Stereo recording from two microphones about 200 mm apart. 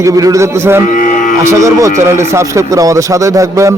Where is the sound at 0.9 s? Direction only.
40° left (ahead or behind).